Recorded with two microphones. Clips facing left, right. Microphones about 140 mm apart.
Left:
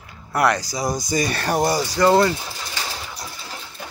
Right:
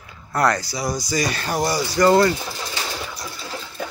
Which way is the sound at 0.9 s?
55° left (ahead or behind).